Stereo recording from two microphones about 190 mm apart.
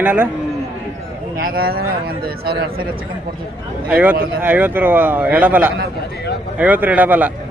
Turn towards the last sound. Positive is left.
turn(degrees=-10)  # may be behind; listen again after turning